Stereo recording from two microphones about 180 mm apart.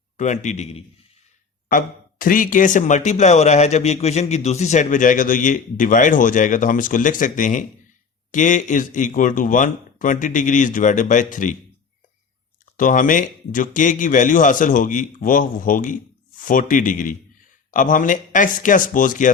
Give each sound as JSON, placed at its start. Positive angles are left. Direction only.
{"t": 0.2, "sound": "a man's voice", "side_deg": 40}
{"t": 1.7, "sound": "speech", "side_deg": 50}
{"t": 12.7, "sound": "speech", "side_deg": 45}